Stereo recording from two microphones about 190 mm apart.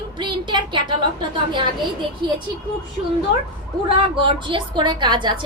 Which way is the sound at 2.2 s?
25° right (ahead or behind).